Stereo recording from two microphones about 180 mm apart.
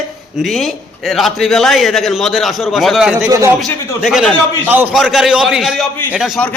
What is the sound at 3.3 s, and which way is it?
Speech, 15° right (ahead or behind).